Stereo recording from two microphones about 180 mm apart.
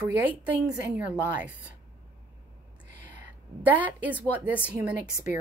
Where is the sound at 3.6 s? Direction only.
10° right (ahead or behind).